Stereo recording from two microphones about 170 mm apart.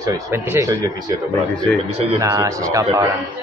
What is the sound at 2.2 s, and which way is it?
Speech, 20° right (ahead or behind).